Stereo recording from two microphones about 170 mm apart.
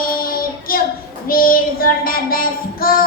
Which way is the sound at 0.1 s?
60° left (ahead or behind).